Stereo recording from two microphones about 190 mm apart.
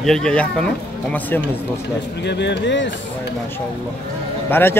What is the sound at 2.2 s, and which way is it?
Speech, 65° left (ahead or behind).